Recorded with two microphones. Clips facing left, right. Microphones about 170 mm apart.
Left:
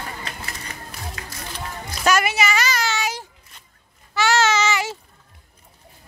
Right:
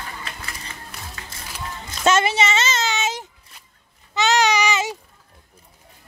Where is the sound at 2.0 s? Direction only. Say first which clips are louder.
Right 2 dB; 25° right (ahead or behind).